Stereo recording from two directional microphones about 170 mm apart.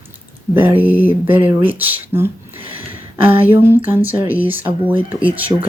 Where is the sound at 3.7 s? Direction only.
10° right (ahead or behind).